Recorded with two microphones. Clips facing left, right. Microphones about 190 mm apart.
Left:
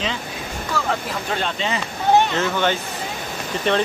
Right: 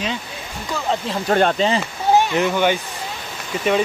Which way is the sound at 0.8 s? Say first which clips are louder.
Left 1 dB; 20° right (ahead or behind).